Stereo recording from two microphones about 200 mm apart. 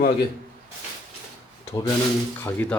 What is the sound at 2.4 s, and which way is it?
Speech, 10° left (ahead or behind).